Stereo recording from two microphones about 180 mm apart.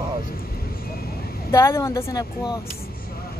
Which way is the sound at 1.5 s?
15° left (ahead or behind).